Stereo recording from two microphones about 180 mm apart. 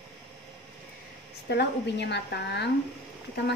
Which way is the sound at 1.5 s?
70° left (ahead or behind).